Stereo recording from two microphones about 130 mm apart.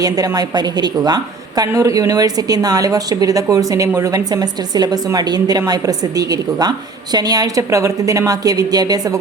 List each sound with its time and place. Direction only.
0.0 s a woman's voice: 30° right (ahead or behind)